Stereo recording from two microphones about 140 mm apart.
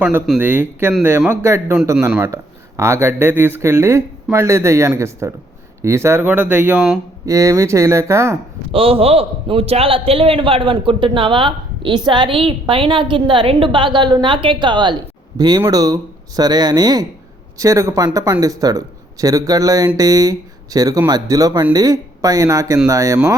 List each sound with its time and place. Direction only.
0.3 s speech: 15° right (ahead or behind)
2.0 s speech: 5° right (ahead or behind)
2.2 s speech: 20° right (ahead or behind)
8.7 s a man's voice: 40° right (ahead or behind); by 23.3 s 25° right (ahead or behind)